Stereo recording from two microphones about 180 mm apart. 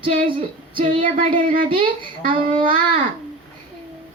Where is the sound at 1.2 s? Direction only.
50° right (ahead or behind).